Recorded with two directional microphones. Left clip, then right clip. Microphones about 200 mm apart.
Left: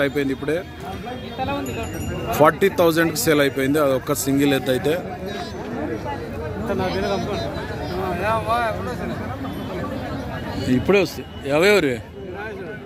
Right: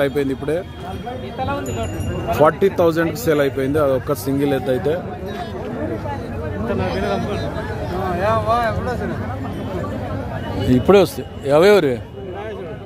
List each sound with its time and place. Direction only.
0.0 s speech: 10° right (ahead or behind)
2.3 s speech: centre (ahead or behind)
8.2 s speech: 45° right (ahead or behind)
10.7 s speech: 15° right (ahead or behind)